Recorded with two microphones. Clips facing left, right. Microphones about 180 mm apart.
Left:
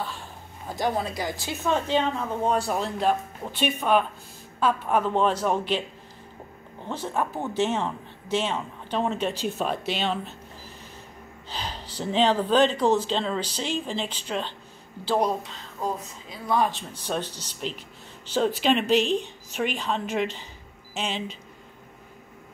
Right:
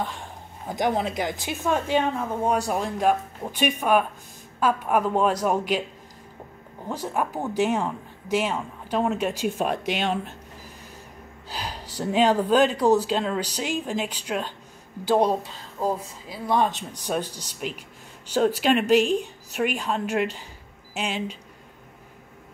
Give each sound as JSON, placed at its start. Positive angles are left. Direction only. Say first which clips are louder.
{"t": 0.0, "sound": "a woman's voice", "louder": "right 3 dB", "side_deg": -15}
{"t": 6.9, "sound": "a woman's voice", "louder": "right 1 dB", "side_deg": -10}
{"t": 11.5, "sound": "a sound", "louder": "right 1 dB", "side_deg": -10}
{"t": 12.0, "sound": "a woman's voice", "louder": "right 2 dB", "side_deg": -10}
{"t": 15.0, "sound": "speech", "louder": "right 3 dB", "side_deg": -25}
{"t": 16.4, "sound": "a woman's voice", "louder": "right 1 dB", "side_deg": -25}